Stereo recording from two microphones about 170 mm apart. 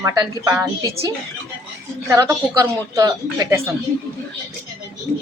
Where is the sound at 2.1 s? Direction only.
20° right (ahead or behind).